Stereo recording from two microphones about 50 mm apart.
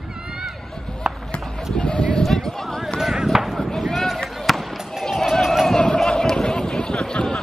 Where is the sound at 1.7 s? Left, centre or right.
Left.